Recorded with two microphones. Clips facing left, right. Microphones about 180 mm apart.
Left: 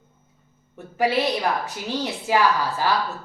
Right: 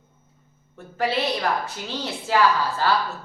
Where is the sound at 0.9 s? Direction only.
15° left (ahead or behind).